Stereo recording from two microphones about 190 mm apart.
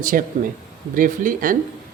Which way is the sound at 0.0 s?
45° right (ahead or behind).